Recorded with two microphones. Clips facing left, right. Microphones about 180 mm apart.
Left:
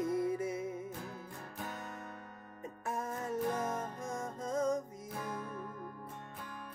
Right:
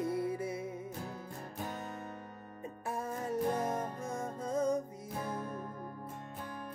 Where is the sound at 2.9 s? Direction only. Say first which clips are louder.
Right 1 dB; 30° right (ahead or behind).